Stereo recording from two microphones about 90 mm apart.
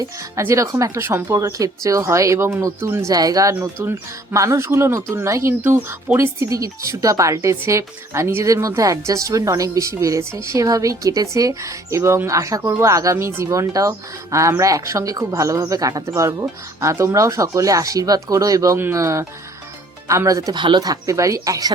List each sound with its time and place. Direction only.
0.3 s speech: 35° right (ahead or behind)
20.5 s speech: 60° right (ahead or behind)
20.8 s speech: 40° right (ahead or behind)